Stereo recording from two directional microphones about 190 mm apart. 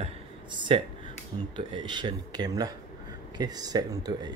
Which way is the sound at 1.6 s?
25° right (ahead or behind).